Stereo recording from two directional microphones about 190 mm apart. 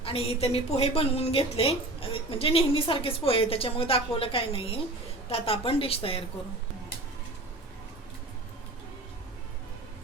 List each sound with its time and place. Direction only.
0.0 s a woman's voice: 30° left (ahead or behind)